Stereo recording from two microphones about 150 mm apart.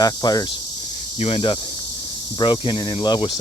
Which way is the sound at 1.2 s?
35° left (ahead or behind).